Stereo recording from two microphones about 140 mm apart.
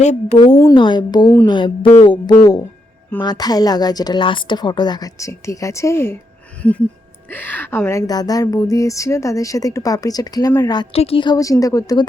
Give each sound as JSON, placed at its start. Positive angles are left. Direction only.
{"t": 0.0, "sound": "speech", "side_deg": 55}
{"t": 0.3, "sound": "a woman's voice", "side_deg": 30}
{"t": 3.2, "sound": "a woman's voice", "side_deg": 30}
{"t": 6.6, "sound": "a sound", "side_deg": 10}
{"t": 7.3, "sound": "a woman's voice", "side_deg": 10}
{"t": 10.9, "sound": "a woman's voice", "side_deg": 45}